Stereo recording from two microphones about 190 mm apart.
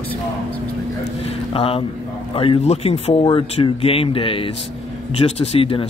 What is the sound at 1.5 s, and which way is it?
Speech, 30° left (ahead or behind).